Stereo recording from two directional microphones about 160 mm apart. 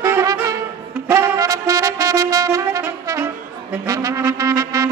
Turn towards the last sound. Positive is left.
turn(degrees=-20)  # may be behind; listen again after turning